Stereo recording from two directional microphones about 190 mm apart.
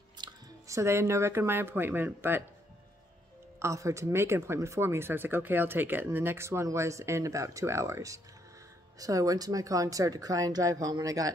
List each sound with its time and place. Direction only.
0.2 s speech: 15° right (ahead or behind)
3.5 s speech: 15° right (ahead or behind)